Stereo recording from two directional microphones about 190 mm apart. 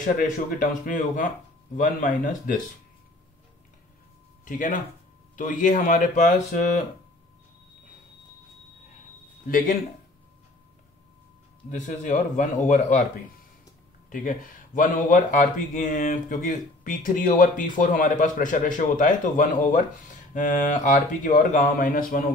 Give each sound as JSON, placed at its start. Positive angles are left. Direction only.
{"t": 0.6, "sound": "speech", "side_deg": 45}
{"t": 4.5, "sound": "speech", "side_deg": 45}
{"t": 9.5, "sound": "speech", "side_deg": 45}
{"t": 11.7, "sound": "a man's voice", "side_deg": 40}
{"t": 14.1, "sound": "speech", "side_deg": 45}